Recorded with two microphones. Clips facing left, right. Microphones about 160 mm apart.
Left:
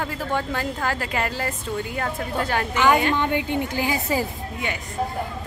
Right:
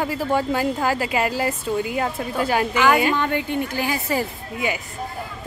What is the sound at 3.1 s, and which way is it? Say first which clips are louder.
A woman's voice: even; 15° left (ahead or behind).